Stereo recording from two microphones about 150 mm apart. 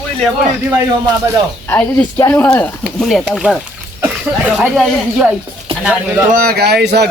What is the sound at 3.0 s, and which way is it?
Speech, centre (ahead or behind).